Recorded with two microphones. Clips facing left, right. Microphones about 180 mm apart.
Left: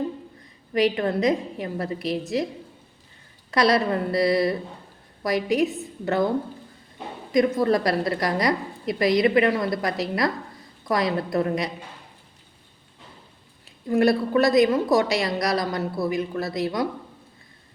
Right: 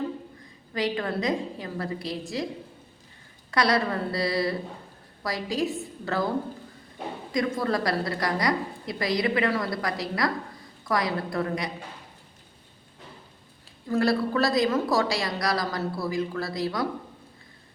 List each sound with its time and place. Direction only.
0.7 s a woman's voice: 20° left (ahead or behind)
3.5 s a woman's voice: 20° left (ahead or behind)
7.3 s a woman's voice: 20° left (ahead or behind)
13.7 s a woman's voice: 20° left (ahead or behind)